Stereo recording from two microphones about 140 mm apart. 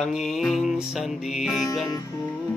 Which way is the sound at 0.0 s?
Centre (ahead or behind).